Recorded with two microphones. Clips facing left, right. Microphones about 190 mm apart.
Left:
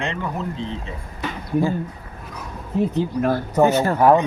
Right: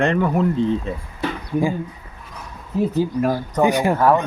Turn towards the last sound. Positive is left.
turn(degrees=15)  # may be behind; listen again after turning